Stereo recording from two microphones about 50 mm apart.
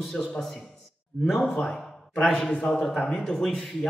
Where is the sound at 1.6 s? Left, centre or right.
Centre.